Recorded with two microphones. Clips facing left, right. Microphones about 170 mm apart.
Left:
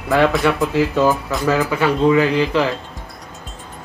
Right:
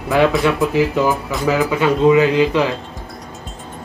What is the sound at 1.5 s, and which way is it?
Speech, 15° right (ahead or behind).